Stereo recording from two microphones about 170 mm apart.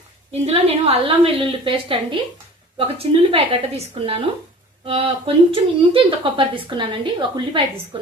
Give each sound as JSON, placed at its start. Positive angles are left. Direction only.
{"t": 0.4, "sound": "speech", "side_deg": -35}